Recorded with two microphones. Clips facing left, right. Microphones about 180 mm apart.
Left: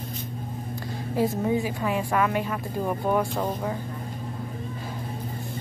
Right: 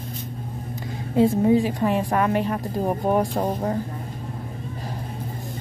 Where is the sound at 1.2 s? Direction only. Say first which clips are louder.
Right 7 dB; 30° right (ahead or behind).